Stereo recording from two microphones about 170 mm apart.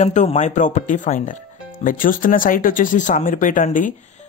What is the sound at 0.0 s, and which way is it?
Speech, 40° left (ahead or behind).